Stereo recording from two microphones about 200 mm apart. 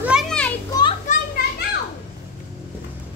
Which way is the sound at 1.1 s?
35° left (ahead or behind).